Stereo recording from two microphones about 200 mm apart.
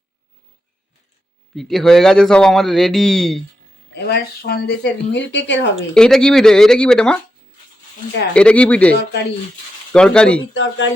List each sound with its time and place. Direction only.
1.5 s speech: centre (ahead or behind)
3.9 s speech: 50° left (ahead or behind)
5.9 s speech: 5° left (ahead or behind)
8.3 s speech: 5° left (ahead or behind)
9.9 s speech: 5° left (ahead or behind)
10.5 s speech: 65° left (ahead or behind)